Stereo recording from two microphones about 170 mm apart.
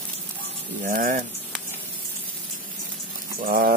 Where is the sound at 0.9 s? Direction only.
50° right (ahead or behind).